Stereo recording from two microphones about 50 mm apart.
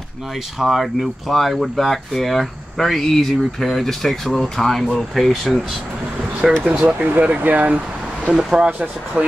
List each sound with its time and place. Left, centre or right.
0.6 s speech: centre
6.9 s speech: right
8.3 s speech: centre
8.6 s speech: right